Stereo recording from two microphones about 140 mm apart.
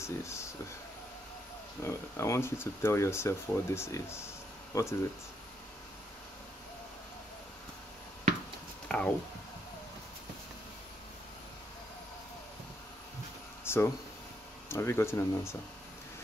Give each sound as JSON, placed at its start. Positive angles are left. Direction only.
{"t": 0.0, "sound": "speech", "side_deg": 20}
{"t": 1.8, "sound": "speech", "side_deg": 20}
{"t": 8.8, "sound": "a sound", "side_deg": 10}
{"t": 13.7, "sound": "speech", "side_deg": 20}